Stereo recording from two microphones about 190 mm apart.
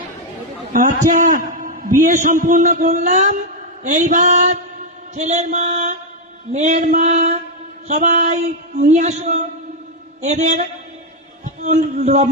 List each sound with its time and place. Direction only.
0.7 s a man's voice: 45° right (ahead or behind)